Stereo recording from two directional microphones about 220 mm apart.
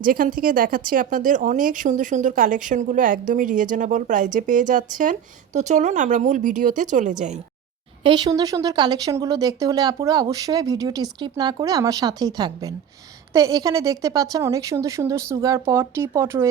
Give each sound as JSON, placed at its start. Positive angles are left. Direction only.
{"t": 0.0, "sound": "speech", "side_deg": -40}
{"t": 8.0, "sound": "speech", "side_deg": -20}